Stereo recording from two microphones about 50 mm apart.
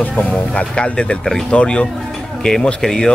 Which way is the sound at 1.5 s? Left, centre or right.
Left.